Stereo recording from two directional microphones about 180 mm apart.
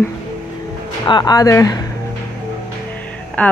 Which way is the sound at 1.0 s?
25° left (ahead or behind).